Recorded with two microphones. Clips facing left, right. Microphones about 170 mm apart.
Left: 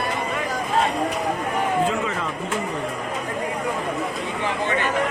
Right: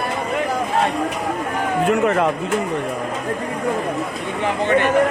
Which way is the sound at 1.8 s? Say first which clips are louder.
Right 8 dB; 65° right (ahead or behind).